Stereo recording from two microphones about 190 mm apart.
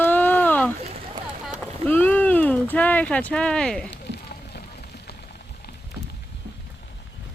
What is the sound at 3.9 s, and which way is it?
Fire, 60° left (ahead or behind).